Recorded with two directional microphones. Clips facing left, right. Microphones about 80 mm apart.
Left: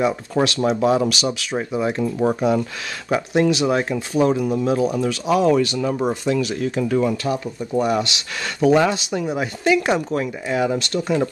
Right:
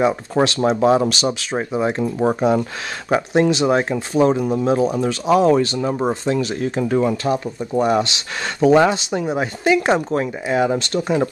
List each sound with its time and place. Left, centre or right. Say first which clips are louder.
0.0 s speech: right 2 dB; right